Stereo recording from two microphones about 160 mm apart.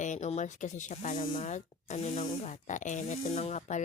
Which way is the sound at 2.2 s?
35° left (ahead or behind).